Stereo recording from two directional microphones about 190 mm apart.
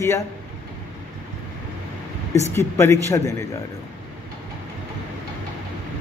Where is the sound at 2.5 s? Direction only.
15° left (ahead or behind).